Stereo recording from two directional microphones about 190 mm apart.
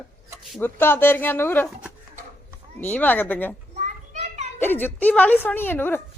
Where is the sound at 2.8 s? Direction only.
10° left (ahead or behind).